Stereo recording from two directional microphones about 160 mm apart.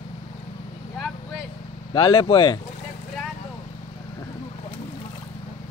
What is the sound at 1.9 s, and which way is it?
Speech, 30° left (ahead or behind).